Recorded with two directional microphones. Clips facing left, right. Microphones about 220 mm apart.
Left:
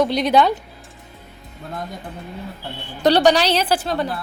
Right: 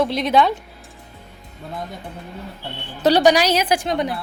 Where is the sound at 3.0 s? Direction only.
10° right (ahead or behind).